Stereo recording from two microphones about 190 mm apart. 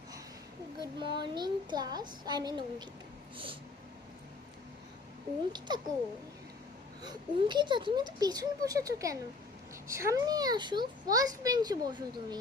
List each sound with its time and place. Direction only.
0.8 s a child's voice: 25° right (ahead or behind)
5.5 s a child's voice: 25° right (ahead or behind)
7.0 s a child's voice: 25° right (ahead or behind)